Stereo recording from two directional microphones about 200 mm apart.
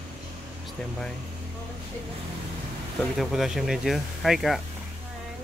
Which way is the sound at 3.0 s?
Centre (ahead or behind).